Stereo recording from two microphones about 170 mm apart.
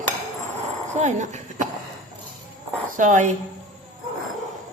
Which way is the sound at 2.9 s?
50° right (ahead or behind).